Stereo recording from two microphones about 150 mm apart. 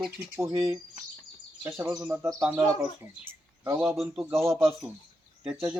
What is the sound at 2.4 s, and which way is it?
Speech, 5° right (ahead or behind).